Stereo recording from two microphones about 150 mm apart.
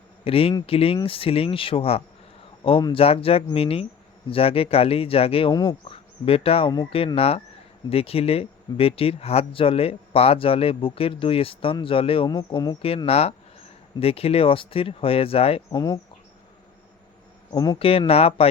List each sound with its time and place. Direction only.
0.3 s speech: 40° left (ahead or behind)
5.5 s speech: 25° left (ahead or behind)
5.9 s speech: 40° left (ahead or behind)
12.4 s speech: 25° left (ahead or behind)
13.1 s speech: 45° left (ahead or behind)
15.7 s speech: 25° left (ahead or behind)
17.5 s speech: 25° left (ahead or behind)
17.7 s speech: 40° left (ahead or behind)